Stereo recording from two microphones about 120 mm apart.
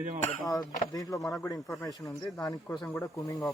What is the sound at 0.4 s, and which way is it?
Speech, 30° left (ahead or behind).